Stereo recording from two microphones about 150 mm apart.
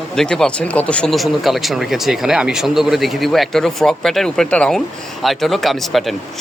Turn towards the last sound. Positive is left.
turn(degrees=0)  # may be behind; listen again after turning